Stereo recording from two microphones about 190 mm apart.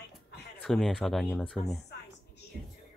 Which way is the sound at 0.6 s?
Centre (ahead or behind).